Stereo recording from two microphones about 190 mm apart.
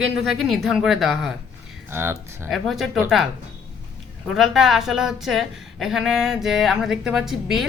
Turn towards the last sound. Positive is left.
turn(degrees=0)  # may be behind; listen again after turning